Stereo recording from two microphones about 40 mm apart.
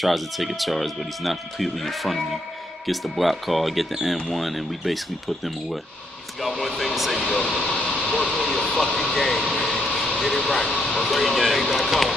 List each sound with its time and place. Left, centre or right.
0.0 s speech: centre
9.8 s vehicle: centre
10.6 s speech: left
10.9 s speech: centre